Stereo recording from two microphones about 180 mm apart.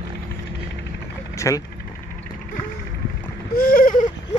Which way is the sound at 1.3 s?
15° left (ahead or behind).